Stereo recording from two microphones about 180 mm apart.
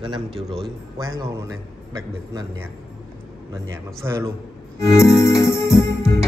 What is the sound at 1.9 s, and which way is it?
A man's voice, 15° right (ahead or behind).